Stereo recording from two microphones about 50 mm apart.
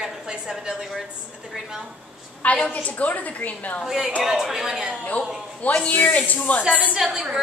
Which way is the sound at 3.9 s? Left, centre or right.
Centre.